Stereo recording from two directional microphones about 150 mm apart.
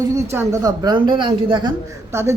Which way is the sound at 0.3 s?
20° right (ahead or behind).